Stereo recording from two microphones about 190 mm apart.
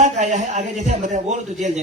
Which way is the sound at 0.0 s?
40° right (ahead or behind).